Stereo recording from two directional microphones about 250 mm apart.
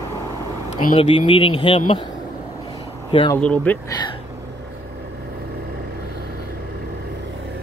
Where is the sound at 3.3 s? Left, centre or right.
Centre.